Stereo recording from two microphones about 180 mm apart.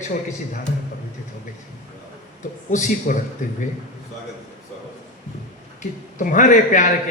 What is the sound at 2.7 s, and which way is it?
Speech, 45° left (ahead or behind).